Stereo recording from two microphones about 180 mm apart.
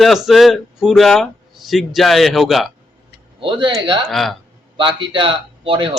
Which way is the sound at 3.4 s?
30° right (ahead or behind).